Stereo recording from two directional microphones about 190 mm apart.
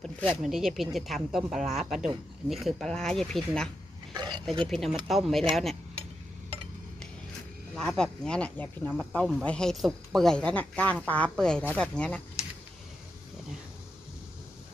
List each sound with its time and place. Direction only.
0.0 s speech: centre (ahead or behind)
4.1 s roaring cats: 20° right (ahead or behind)
4.5 s speech: centre (ahead or behind)
7.7 s speech: 5° left (ahead or behind)